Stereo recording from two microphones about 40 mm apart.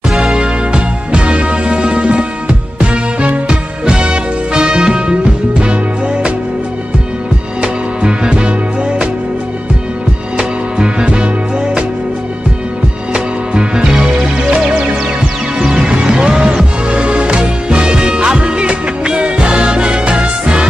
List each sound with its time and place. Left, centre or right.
0.1 s music: centre
7.6 s music: right
10.3 s music: right
13.1 s music: right
15.7 s music: right